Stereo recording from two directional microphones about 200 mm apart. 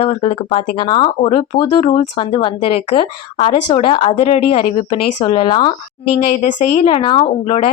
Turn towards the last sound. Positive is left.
turn(degrees=30)  # may be behind; listen again after turning